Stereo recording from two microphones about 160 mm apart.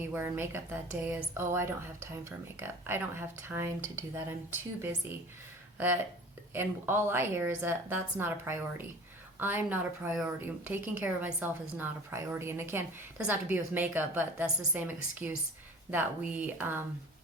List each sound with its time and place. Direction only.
0.1 s a woman's voice: 15° right (ahead or behind)